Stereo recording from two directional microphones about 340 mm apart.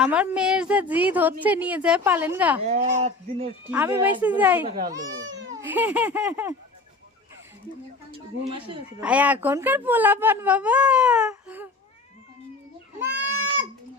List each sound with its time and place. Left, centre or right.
0.0 s speech: centre
2.6 s speech: centre
3.7 s speech: centre
8.1 s a woman's voice: centre
9.0 s speech: centre